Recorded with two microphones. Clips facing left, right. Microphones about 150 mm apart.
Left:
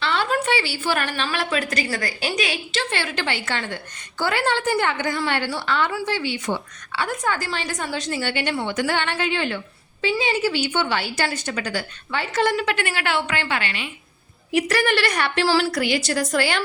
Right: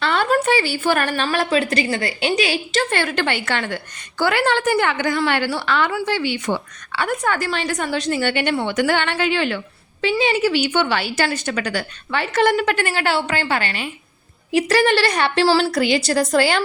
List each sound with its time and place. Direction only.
0.0 s a woman's voice: 50° right (ahead or behind)
1.5 s a woman's voice: 30° right (ahead or behind)
2.7 s a woman's voice: 50° right (ahead or behind); by 9.6 s 90° right
10.0 s a woman's voice: 75° right (ahead or behind); by 13.9 s 40° right (ahead or behind)
14.5 s a woman's voice: 30° right (ahead or behind)